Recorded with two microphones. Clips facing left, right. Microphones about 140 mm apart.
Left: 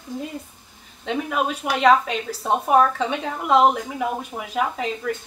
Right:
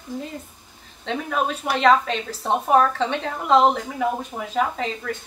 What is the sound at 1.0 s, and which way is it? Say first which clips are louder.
A woman's voice: left 1 dB; 10° left (ahead or behind).